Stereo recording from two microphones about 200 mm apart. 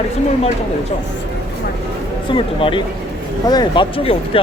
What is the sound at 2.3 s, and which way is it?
Speech, 25° left (ahead or behind).